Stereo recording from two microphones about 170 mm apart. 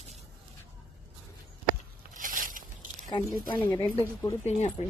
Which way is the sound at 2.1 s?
50° right (ahead or behind).